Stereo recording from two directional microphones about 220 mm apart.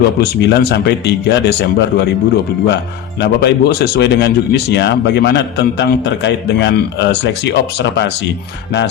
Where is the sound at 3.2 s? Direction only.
50° left (ahead or behind).